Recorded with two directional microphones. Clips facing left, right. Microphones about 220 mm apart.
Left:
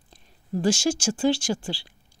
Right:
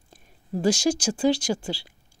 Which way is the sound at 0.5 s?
35° right (ahead or behind).